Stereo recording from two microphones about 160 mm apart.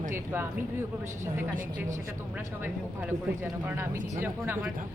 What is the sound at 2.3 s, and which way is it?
Speech, 10° right (ahead or behind).